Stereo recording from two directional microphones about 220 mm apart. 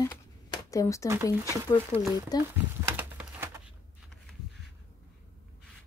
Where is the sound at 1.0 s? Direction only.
10° right (ahead or behind).